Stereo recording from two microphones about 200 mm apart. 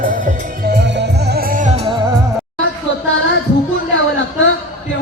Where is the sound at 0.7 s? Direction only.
55° right (ahead or behind); by 2.0 s 25° right (ahead or behind).